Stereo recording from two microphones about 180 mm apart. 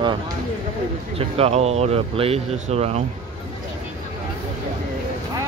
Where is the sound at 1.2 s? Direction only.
35° right (ahead or behind).